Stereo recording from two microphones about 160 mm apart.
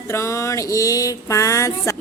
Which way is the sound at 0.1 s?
20° left (ahead or behind).